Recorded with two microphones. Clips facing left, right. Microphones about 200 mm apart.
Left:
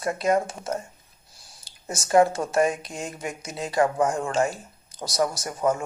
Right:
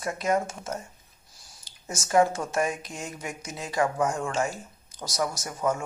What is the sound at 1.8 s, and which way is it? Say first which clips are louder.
Speech: left 3 dB; 35° left (ahead or behind).